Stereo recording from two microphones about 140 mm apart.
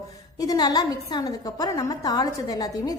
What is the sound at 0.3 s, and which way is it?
A woman's voice, 25° left (ahead or behind).